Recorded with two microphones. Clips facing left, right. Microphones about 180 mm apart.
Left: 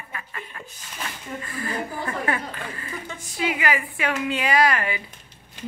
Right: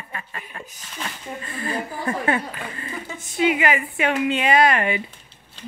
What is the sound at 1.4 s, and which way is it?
Speech, 25° right (ahead or behind).